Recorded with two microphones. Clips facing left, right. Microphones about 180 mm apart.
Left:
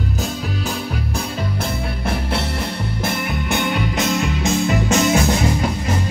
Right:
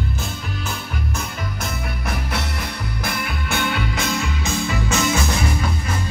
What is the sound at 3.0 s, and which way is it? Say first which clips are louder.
Music: left 4 dB; 20° left (ahead or behind).